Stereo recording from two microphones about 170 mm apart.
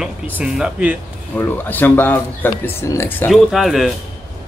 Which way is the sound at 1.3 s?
10° left (ahead or behind).